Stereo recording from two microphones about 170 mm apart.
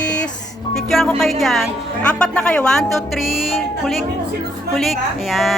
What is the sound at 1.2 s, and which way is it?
Speech, centre (ahead or behind).